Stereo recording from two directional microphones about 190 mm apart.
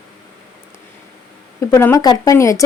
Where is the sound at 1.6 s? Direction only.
15° left (ahead or behind).